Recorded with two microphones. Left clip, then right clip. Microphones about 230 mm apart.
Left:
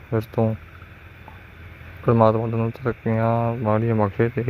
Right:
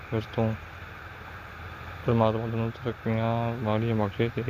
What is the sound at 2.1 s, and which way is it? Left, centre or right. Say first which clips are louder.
Speech: left 8 dB; left.